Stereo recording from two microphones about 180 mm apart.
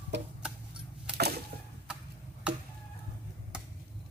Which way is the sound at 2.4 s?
5° right (ahead or behind).